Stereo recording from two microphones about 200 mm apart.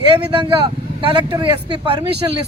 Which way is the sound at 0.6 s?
25° right (ahead or behind).